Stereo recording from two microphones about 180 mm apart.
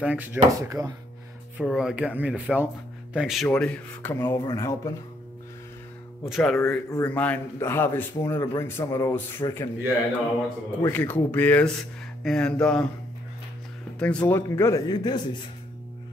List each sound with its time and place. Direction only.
0.0 s speech: 10° right (ahead or behind)
1.6 s speech: 5° right (ahead or behind)
4.2 s speech: 25° left (ahead or behind)
6.2 s music: centre (ahead or behind)
6.6 s speech: 15° left (ahead or behind)
10.9 s speech: 10° left (ahead or behind)
12.2 s music: 5° left (ahead or behind)
13.9 s speech: 5° left (ahead or behind); by 15.4 s 25° left (ahead or behind)